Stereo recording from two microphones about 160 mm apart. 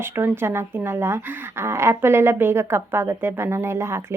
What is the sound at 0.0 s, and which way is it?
Speech, 15° right (ahead or behind).